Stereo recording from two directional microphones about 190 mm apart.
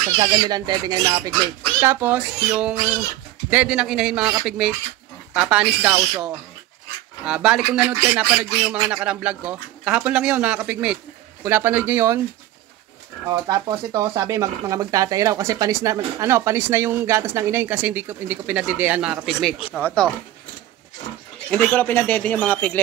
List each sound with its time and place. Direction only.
0.2 s speech: 20° right (ahead or behind)
13.3 s speech: 20° right (ahead or behind); by 20.1 s 5° left (ahead or behind)
21.5 s speech: 5° left (ahead or behind)